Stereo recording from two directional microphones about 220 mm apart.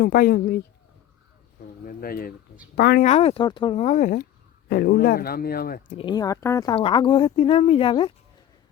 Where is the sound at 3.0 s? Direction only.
30° left (ahead or behind).